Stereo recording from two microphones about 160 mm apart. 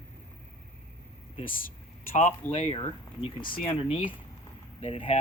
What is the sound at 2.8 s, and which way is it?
Speech, 30° left (ahead or behind).